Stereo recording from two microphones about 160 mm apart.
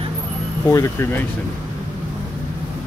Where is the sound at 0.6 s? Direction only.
20° left (ahead or behind).